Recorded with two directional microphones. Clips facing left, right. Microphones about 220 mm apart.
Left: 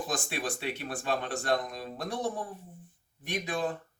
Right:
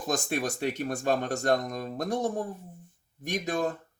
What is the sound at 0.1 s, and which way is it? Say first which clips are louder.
Speech: right 10 dB; 45° right (ahead or behind).